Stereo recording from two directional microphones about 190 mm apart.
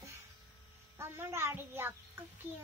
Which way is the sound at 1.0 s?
15° right (ahead or behind).